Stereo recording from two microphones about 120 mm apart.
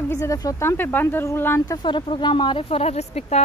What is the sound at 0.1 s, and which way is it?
Speech, 25° left (ahead or behind).